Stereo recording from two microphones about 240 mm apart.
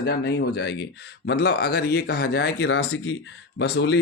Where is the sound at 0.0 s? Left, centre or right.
Left.